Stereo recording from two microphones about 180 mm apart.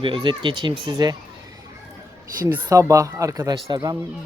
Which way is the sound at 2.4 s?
15° right (ahead or behind).